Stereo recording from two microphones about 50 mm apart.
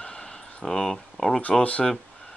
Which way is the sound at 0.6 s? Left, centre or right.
Centre.